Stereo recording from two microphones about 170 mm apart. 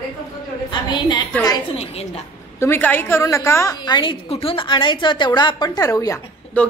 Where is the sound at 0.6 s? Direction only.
25° left (ahead or behind).